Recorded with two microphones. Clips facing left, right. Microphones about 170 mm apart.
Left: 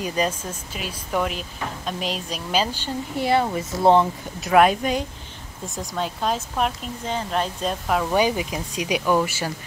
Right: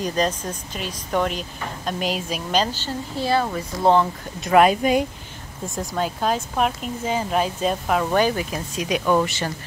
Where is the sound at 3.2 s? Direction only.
20° left (ahead or behind).